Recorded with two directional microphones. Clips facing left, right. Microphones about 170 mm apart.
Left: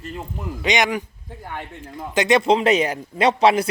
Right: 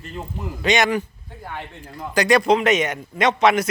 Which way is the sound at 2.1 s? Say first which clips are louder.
Even; 20° left (ahead or behind).